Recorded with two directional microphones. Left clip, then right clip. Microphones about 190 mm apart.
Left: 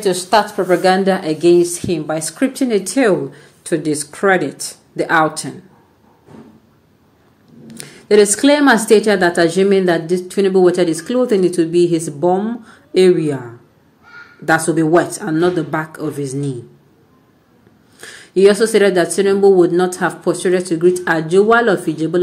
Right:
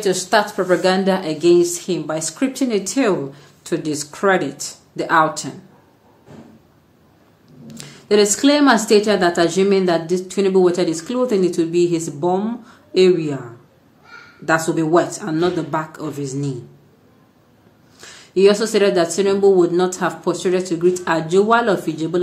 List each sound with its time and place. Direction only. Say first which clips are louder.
0.0 s a woman's voice: left 3 dB; 15° left (ahead or behind)
7.6 s a woman's voice: left 5 dB; 15° left (ahead or behind)
18.0 s a woman's voice: left 3 dB; 20° left (ahead or behind)